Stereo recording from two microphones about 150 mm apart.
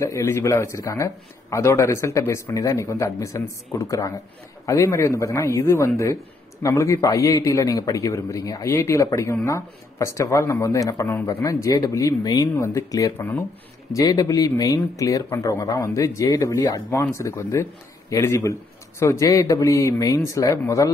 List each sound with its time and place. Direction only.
0.0 s a man's voice: 20° left (ahead or behind)